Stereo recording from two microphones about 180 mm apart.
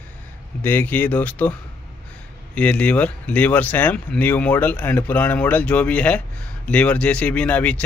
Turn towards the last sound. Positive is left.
turn(degrees=5)  # may be behind; listen again after turning